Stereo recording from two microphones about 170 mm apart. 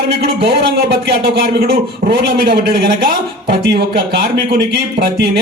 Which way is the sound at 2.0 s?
65° right (ahead or behind).